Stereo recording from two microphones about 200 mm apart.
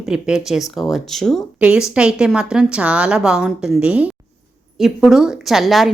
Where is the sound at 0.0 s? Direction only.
5° right (ahead or behind).